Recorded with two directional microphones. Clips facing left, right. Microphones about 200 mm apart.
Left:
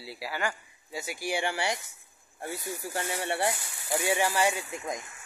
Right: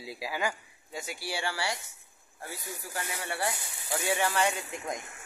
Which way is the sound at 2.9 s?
25° left (ahead or behind).